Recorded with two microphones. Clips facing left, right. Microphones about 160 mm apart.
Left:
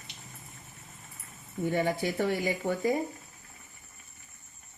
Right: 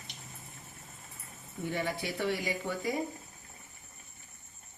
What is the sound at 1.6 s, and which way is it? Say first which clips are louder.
A woman's voice: left 6 dB; 45° left (ahead or behind).